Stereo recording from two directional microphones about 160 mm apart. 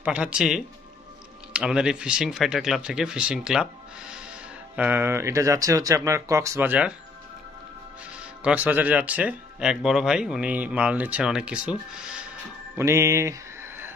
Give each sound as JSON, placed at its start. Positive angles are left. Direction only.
{"t": 0.0, "sound": "speech", "side_deg": -5}
{"t": 8.5, "sound": "speech", "side_deg": -10}
{"t": 12.7, "sound": "a sound", "side_deg": -20}